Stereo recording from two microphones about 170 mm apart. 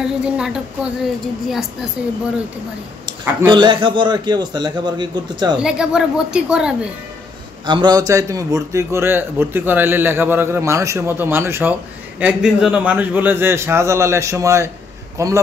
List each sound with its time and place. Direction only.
0.0 s a woman's voice: 5° right (ahead or behind)
3.1 s a man's voice: 25° right (ahead or behind)
5.6 s a woman's voice: 5° right (ahead or behind)
7.6 s a man's voice: 25° right (ahead or behind)